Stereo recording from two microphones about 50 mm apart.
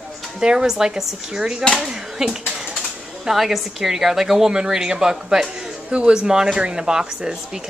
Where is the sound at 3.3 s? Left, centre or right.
Centre.